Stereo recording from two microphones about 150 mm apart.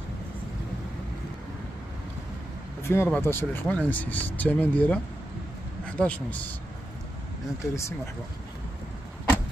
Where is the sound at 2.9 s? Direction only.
15° left (ahead or behind).